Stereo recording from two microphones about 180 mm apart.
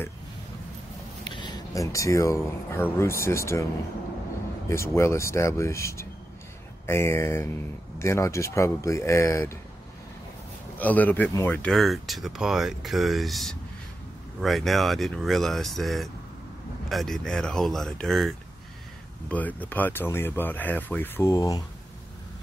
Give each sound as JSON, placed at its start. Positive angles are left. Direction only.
{"t": 1.2, "sound": "speech", "side_deg": 25}
{"t": 4.6, "sound": "speech", "side_deg": 15}
{"t": 10.8, "sound": "speech", "side_deg": 10}